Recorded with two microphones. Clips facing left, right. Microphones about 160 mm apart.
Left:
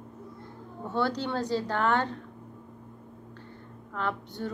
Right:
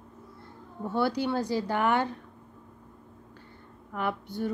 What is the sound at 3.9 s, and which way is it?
Speech, 10° right (ahead or behind).